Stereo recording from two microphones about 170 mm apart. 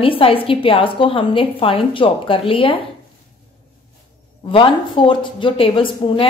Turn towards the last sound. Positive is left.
turn(degrees=30)  # may be behind; listen again after turning